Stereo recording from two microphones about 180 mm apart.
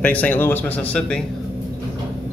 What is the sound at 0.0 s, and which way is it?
A man's voice, 10° left (ahead or behind).